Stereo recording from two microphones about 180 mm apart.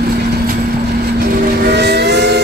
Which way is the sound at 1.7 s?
70° right (ahead or behind).